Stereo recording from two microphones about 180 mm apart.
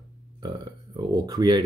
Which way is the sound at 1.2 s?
20° right (ahead or behind).